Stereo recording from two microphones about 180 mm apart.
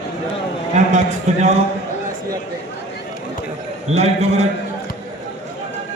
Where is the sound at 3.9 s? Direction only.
35° right (ahead or behind).